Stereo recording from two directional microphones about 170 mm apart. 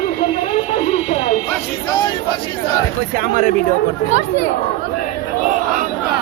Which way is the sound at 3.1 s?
50° right (ahead or behind).